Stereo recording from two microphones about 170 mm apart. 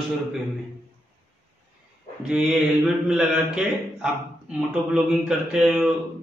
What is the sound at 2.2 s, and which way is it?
A man's voice, 5° right (ahead or behind).